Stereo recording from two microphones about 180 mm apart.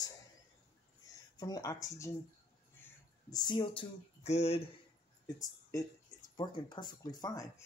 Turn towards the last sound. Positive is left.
turn(degrees=20)  # may be behind; listen again after turning